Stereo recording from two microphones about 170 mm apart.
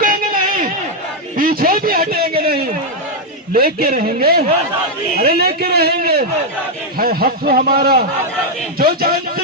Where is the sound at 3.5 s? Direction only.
60° right (ahead or behind).